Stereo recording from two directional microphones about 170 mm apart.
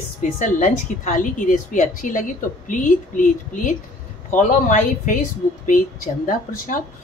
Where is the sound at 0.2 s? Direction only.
50° left (ahead or behind).